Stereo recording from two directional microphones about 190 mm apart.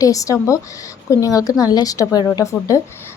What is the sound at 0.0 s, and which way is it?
Speech, 15° left (ahead or behind).